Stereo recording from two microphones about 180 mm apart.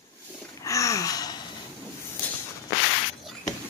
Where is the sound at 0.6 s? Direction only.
15° left (ahead or behind).